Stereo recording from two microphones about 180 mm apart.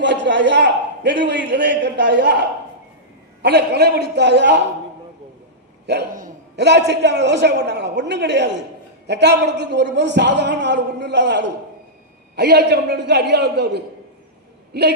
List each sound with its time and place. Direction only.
0.0 s a man's voice: 90° right; by 2.4 s 70° right (ahead or behind)
3.4 s a man's voice: 65° right (ahead or behind)
5.8 s a man's voice: 70° right (ahead or behind)
12.4 s a man's voice: 65° right (ahead or behind)